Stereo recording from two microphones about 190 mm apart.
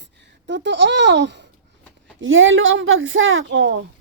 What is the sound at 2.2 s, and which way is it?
Speech, 90° right.